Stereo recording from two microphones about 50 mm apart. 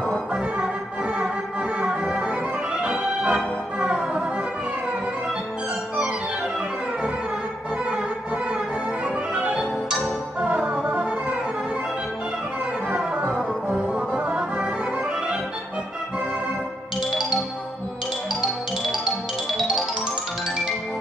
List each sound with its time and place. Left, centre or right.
1.8 s music: centre
9.3 s music: right
12.9 s music: right
13.3 s music: right